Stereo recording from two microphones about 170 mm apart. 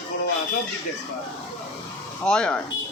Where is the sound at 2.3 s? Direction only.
5° left (ahead or behind).